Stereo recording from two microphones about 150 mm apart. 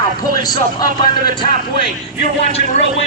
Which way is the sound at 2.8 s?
50° left (ahead or behind).